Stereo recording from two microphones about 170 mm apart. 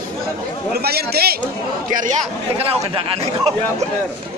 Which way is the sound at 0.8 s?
65° right (ahead or behind).